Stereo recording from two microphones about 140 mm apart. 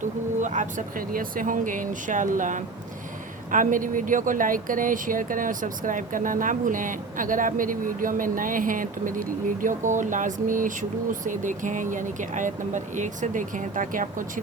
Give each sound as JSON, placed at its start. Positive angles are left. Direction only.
{"t": 0.0, "sound": "speech", "side_deg": -60}